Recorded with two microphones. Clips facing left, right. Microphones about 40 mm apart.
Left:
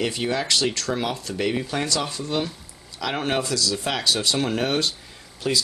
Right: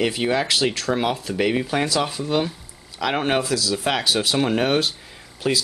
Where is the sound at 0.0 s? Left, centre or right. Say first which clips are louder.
Right 4 dB; centre.